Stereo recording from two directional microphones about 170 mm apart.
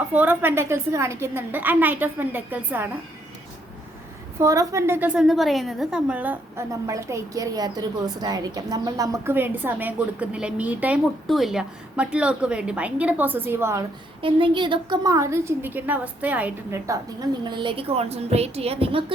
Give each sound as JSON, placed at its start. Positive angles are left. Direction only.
{"t": 0.1, "sound": "a woman's voice", "side_deg": -10}
{"t": 4.4, "sound": "a woman's voice", "side_deg": -20}
{"t": 14.2, "sound": "a woman's voice", "side_deg": -30}